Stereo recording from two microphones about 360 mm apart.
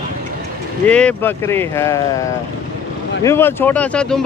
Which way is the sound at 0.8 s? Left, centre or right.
Centre.